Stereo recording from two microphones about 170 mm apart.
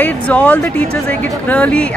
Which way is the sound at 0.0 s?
10° left (ahead or behind).